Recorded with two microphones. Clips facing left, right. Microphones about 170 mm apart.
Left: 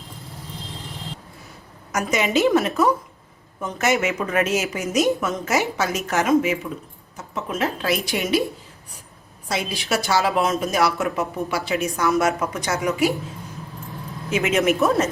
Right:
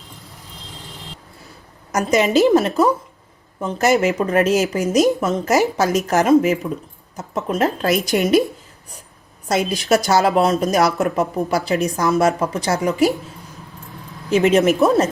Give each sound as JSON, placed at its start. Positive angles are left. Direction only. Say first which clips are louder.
{"t": 1.9, "sound": "a woman's voice", "louder": "right 5 dB", "side_deg": -35}
{"t": 9.5, "sound": "a woman's voice", "louder": "right 7 dB", "side_deg": -45}
{"t": 14.3, "sound": "a woman's voice", "louder": "right 5 dB", "side_deg": -35}